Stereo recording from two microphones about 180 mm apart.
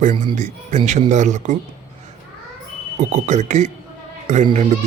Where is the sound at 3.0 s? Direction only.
40° right (ahead or behind).